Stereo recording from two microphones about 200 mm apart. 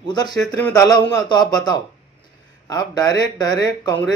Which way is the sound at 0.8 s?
20° left (ahead or behind).